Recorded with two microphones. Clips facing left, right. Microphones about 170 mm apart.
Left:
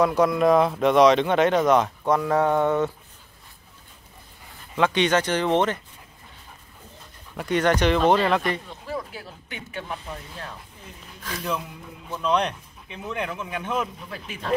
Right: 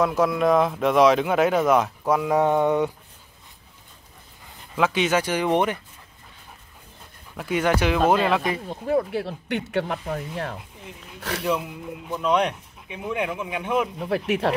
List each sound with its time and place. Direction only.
0.0 s speech: centre (ahead or behind)
4.7 s a man's voice: 5° right (ahead or behind)
7.3 s a man's voice: 5° right (ahead or behind)
8.6 s speech: 55° right (ahead or behind); by 11.4 s 75° right (ahead or behind)
12.1 s a man's voice: 10° right (ahead or behind)
13.9 s speech: 70° right (ahead or behind)